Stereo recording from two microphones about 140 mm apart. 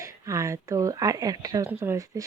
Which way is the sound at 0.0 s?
20° right (ahead or behind).